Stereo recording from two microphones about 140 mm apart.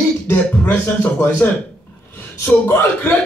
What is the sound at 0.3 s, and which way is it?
Speech, 15° left (ahead or behind).